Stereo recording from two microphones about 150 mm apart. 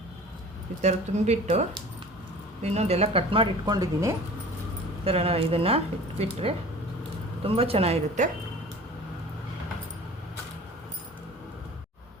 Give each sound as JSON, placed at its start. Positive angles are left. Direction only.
{"t": 0.8, "sound": "speech", "side_deg": -50}
{"t": 5.0, "sound": "speech", "side_deg": -40}